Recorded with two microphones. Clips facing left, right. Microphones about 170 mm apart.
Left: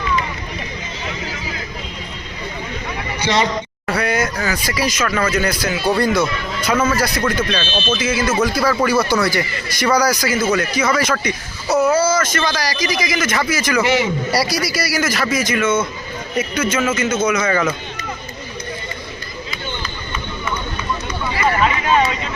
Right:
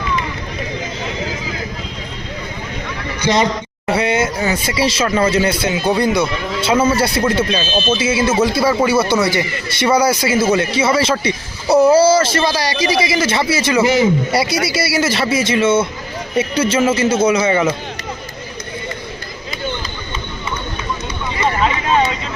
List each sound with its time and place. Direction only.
3.2 s a sound: 45° right (ahead or behind)
3.8 s speech: 25° right (ahead or behind)
13.8 s speech: 40° right (ahead or behind)
14.3 s speech: 25° right (ahead or behind)